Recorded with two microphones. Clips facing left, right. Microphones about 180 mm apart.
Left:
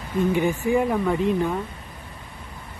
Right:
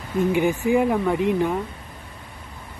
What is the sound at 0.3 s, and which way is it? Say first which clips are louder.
Speech: right 2 dB; 15° right (ahead or behind).